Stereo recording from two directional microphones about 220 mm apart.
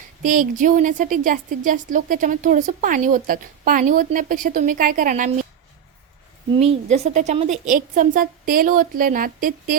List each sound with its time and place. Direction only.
0.2 s a woman's voice: 35° right (ahead or behind)
6.5 s a woman's voice: 25° right (ahead or behind)